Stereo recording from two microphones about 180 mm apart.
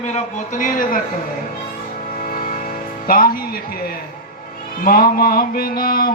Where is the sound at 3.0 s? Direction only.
55° left (ahead or behind).